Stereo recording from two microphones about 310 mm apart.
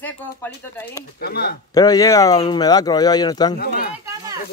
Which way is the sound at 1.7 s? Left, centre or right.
Centre.